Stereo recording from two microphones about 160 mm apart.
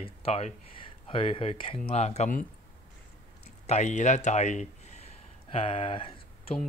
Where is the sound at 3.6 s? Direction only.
45° left (ahead or behind).